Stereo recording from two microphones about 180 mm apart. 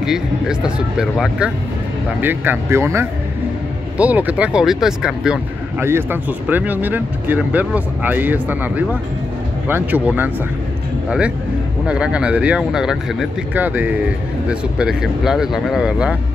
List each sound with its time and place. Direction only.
0.0 s speech: 5° right (ahead or behind)